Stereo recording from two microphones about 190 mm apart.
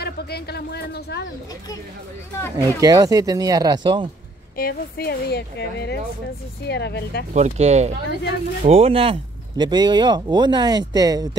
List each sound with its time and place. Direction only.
0.0 s speech: 55° left (ahead or behind)
2.5 s speech: 20° right (ahead or behind)
4.6 s speech: 50° left (ahead or behind)
7.3 s speech: 35° right (ahead or behind); by 11.2 s 20° right (ahead or behind)